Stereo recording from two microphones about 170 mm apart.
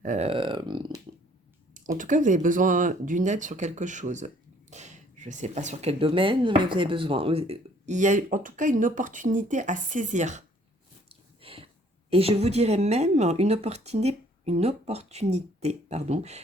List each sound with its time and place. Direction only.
0.0 s speech: 45° right (ahead or behind)
0.3 s speech: 30° right (ahead or behind)
1.7 s speech: 50° right (ahead or behind)
11.1 s a sound: 35° right (ahead or behind)
12.1 s speech: 35° right (ahead or behind)